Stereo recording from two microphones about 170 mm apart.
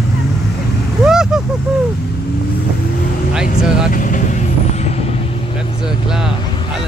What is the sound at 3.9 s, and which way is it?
Vehicle, 50° left (ahead or behind).